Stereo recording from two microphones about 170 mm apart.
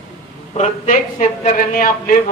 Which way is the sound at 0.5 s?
45° left (ahead or behind).